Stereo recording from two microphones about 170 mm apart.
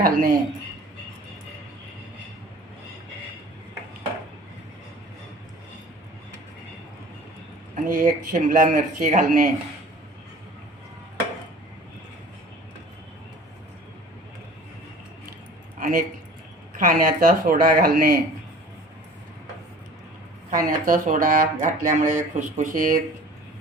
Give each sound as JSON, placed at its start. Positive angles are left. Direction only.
{"t": 0.0, "sound": "speech", "side_deg": -55}
{"t": 7.9, "sound": "speech", "side_deg": -55}
{"t": 15.8, "sound": "speech", "side_deg": -55}
{"t": 20.5, "sound": "speech", "side_deg": -55}